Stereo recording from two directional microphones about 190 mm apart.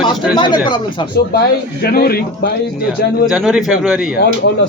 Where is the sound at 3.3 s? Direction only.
5° right (ahead or behind).